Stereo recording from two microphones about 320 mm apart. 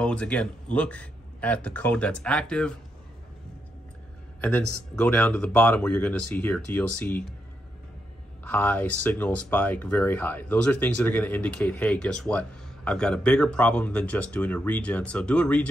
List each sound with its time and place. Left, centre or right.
0.0 s speech: centre
4.4 s speech: centre
8.5 s speech: centre